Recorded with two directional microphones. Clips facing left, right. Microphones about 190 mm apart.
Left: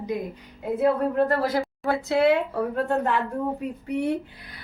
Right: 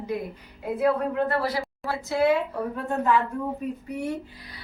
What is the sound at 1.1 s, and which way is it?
Speech, 40° left (ahead or behind).